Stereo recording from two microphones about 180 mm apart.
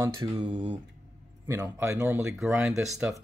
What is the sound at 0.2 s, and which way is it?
Speech, 30° right (ahead or behind).